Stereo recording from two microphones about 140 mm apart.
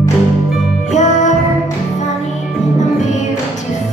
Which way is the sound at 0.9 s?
55° left (ahead or behind).